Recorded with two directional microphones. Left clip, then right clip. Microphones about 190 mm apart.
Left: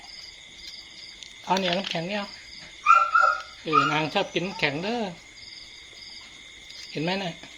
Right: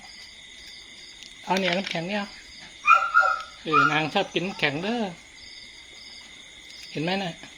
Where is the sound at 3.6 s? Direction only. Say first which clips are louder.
Right 1 dB; centre (ahead or behind).